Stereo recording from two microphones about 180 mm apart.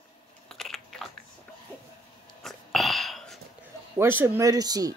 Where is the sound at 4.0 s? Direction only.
15° right (ahead or behind).